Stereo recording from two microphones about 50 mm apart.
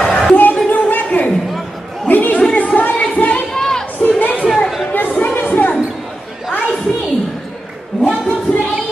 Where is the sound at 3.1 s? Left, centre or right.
Left.